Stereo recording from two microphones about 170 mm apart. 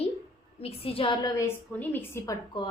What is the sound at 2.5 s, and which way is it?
Speech, 25° left (ahead or behind).